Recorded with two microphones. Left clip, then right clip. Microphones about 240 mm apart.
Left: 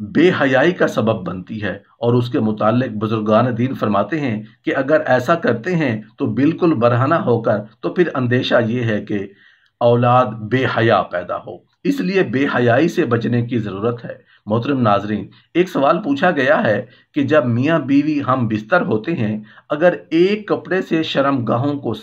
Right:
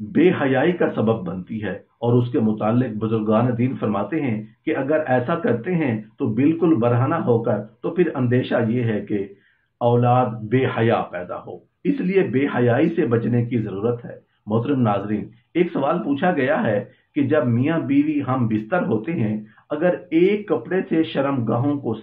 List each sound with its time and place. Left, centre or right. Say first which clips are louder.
0.1 s speech: left 4 dB; left